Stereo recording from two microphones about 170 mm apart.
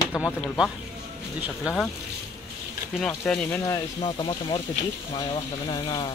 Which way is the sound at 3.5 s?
20° left (ahead or behind).